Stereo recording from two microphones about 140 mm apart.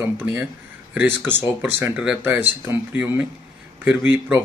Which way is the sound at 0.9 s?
15° right (ahead or behind).